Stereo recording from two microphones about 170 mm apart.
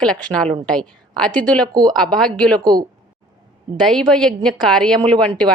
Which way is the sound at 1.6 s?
25° right (ahead or behind).